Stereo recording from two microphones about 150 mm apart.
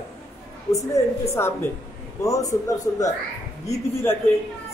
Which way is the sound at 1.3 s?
15° left (ahead or behind).